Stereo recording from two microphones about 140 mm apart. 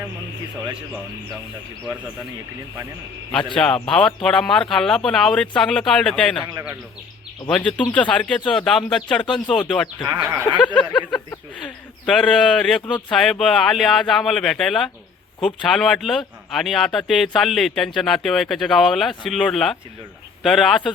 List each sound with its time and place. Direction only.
3.3 s speech: 5° left (ahead or behind)
6.4 s a man's voice: 20° right (ahead or behind)
7.5 s speech: 10° left (ahead or behind)